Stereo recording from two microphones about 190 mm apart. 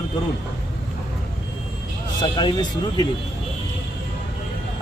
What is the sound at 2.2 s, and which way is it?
Speech, 25° left (ahead or behind).